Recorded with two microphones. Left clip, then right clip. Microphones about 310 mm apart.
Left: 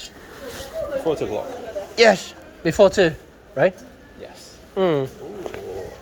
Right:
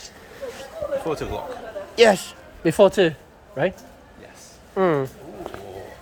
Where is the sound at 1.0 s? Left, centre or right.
Right.